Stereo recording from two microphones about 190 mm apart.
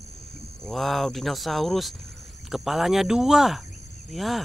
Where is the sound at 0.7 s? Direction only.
Centre (ahead or behind).